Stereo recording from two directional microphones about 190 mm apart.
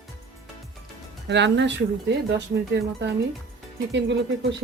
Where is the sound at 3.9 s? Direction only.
65° right (ahead or behind).